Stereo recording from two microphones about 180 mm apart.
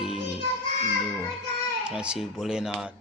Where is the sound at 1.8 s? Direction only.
5° right (ahead or behind).